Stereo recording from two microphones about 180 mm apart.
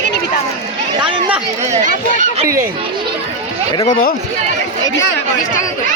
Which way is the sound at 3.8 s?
50° left (ahead or behind).